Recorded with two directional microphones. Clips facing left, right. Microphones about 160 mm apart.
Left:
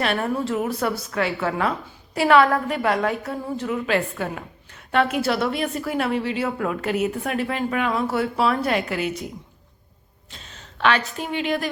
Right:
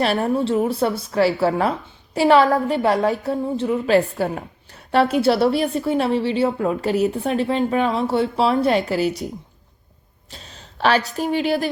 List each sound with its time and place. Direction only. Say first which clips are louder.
0.0 s a woman's voice: right 4 dB; 30° right (ahead or behind)
10.3 s speech: right 3 dB; 35° right (ahead or behind)